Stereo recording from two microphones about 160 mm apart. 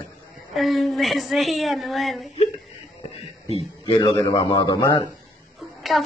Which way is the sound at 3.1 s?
40° left (ahead or behind).